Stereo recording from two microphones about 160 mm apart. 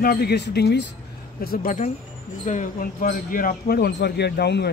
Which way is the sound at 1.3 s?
65° left (ahead or behind).